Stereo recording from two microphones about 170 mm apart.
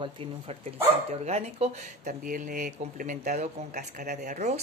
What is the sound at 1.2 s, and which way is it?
Speech, 40° right (ahead or behind).